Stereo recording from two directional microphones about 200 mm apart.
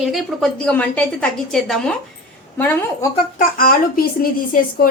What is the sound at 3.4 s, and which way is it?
A woman's voice, 45° left (ahead or behind).